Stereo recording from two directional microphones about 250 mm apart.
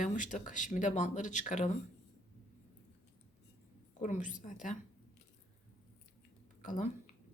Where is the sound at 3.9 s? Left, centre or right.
Left.